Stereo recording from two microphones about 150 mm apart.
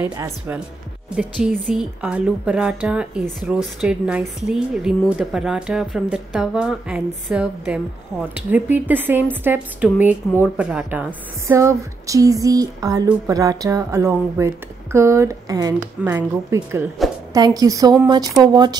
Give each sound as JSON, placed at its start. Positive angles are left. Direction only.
{"t": 0.0, "sound": "a woman's voice", "side_deg": -15}
{"t": 16.0, "sound": "a woman's voice", "side_deg": -15}